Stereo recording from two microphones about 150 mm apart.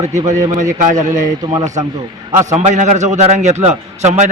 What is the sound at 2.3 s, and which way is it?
A man's voice, 55° right (ahead or behind).